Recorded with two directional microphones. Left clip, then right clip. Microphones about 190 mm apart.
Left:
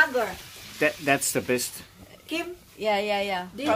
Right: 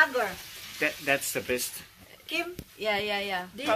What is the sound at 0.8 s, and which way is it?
Speech, 60° left (ahead or behind).